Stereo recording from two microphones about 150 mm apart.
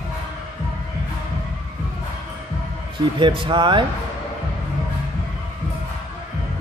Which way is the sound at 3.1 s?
35° right (ahead or behind).